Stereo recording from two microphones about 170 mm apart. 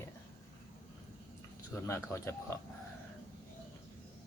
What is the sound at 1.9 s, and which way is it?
Speech, 15° left (ahead or behind).